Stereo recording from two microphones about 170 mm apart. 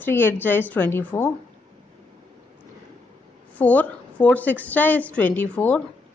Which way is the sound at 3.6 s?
10° left (ahead or behind).